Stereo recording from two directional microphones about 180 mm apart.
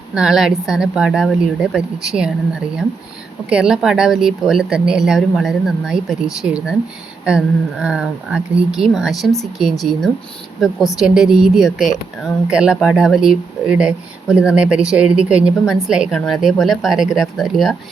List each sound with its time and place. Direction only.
0.1 s speech: 5° right (ahead or behind)
3.5 s speech: 5° right (ahead or behind)